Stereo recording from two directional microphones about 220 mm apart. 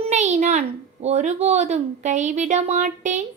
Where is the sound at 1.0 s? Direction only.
30° right (ahead or behind).